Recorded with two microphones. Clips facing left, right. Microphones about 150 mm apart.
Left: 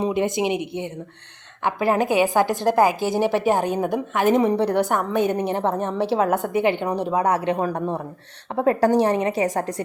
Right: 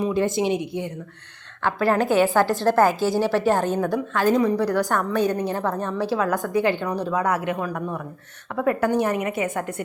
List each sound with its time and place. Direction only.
0.0 s a woman's voice: 20° left (ahead or behind)